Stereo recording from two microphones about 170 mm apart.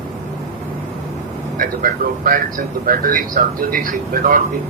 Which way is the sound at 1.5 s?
55° right (ahead or behind).